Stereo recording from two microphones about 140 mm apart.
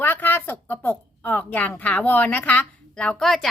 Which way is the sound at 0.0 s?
15° left (ahead or behind).